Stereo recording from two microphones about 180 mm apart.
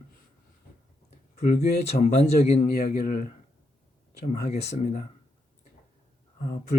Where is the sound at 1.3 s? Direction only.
40° left (ahead or behind).